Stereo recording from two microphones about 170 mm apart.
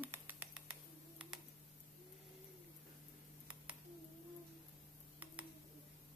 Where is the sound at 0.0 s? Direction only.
10° right (ahead or behind).